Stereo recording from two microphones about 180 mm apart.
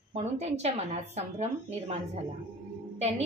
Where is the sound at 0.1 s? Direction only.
35° right (ahead or behind).